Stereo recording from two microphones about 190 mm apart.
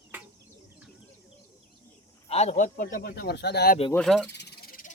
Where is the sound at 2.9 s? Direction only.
55° left (ahead or behind).